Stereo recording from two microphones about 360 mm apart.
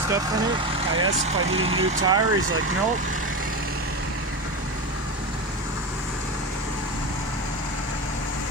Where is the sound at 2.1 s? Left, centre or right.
Right.